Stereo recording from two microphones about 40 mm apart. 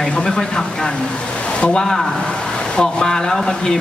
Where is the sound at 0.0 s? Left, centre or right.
Centre.